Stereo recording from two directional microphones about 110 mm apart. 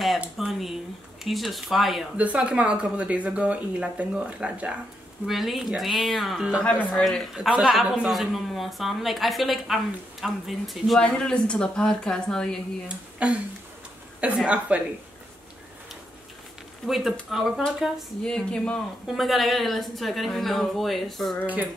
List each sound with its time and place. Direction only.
0.2 s speech: centre (ahead or behind)
2.1 s speech: 10° right (ahead or behind)
6.6 s a man's voice: 10° left (ahead or behind)
7.3 s speech: 5° right (ahead or behind)
12.8 s speech: 10° right (ahead or behind)
16.8 s speech: centre (ahead or behind)